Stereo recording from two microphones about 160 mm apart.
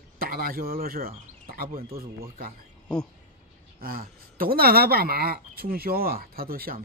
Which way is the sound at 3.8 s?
65° right (ahead or behind).